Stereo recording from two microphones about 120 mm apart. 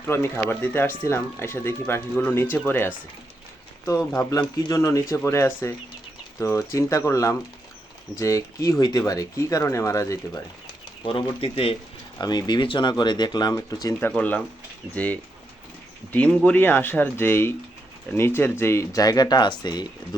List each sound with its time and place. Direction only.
0.1 s speech: 20° left (ahead or behind)
4.3 s speech: 35° left (ahead or behind)
11.0 s speech: 45° left (ahead or behind)
12.2 s speech: 35° left (ahead or behind)
14.2 s speech: 10° left (ahead or behind); by 19.9 s 35° left (ahead or behind)